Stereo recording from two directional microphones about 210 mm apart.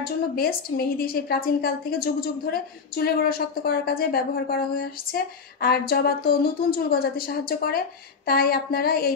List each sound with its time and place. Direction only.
0.0 s a woman's voice: 45° left (ahead or behind)